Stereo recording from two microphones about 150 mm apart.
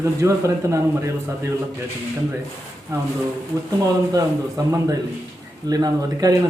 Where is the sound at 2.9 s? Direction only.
20° right (ahead or behind).